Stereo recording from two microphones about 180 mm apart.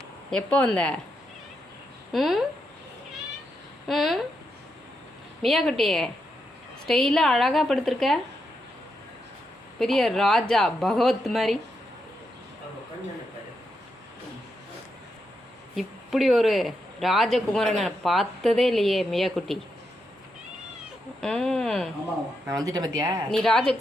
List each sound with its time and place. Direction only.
0.3 s speech: 5° left (ahead or behind)
2.1 s speech: centre (ahead or behind)
3.8 s speech: centre (ahead or behind)
5.4 s speech: centre (ahead or behind)
9.7 s speech: centre (ahead or behind)
15.7 s speech: centre (ahead or behind)
21.2 s speech: 5° left (ahead or behind)
22.4 s speech: 20° right (ahead or behind)
23.3 s speech: centre (ahead or behind)